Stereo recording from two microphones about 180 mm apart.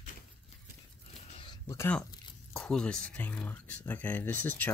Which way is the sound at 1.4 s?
20° left (ahead or behind).